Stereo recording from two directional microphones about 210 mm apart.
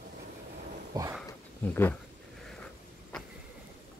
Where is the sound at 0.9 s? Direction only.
20° right (ahead or behind).